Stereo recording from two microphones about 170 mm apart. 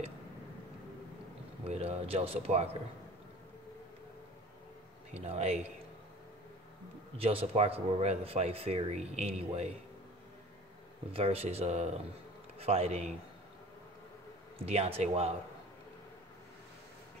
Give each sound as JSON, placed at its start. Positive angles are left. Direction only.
{"t": 1.7, "sound": "speech", "side_deg": -35}
{"t": 5.1, "sound": "speech", "side_deg": -40}
{"t": 7.2, "sound": "speech", "side_deg": -35}
{"t": 11.1, "sound": "speech", "side_deg": -35}
{"t": 14.6, "sound": "speech", "side_deg": -35}